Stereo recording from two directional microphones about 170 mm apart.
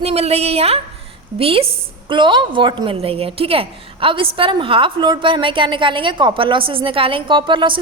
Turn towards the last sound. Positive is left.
turn(degrees=-30)  # may be behind; listen again after turning